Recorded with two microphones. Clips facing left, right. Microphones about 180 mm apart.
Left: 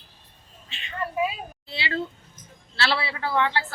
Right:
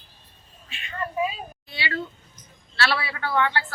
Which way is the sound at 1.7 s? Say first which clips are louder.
Left 2 dB; 25° left (ahead or behind).